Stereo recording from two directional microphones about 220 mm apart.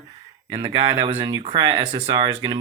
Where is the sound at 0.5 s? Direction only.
20° right (ahead or behind).